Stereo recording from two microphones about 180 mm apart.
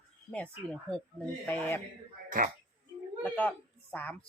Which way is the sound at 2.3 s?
50° right (ahead or behind).